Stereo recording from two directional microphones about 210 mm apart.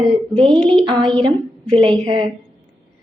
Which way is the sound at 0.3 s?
20° right (ahead or behind).